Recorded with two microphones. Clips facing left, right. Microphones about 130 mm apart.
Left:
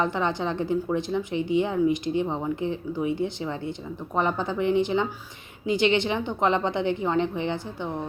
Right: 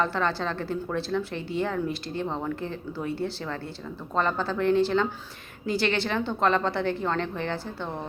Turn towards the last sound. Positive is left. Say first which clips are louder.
# left 2 dB
turn(degrees=15)  # may be behind; listen again after turning